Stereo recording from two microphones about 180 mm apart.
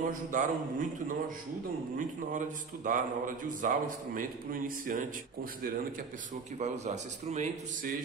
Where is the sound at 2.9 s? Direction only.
45° right (ahead or behind).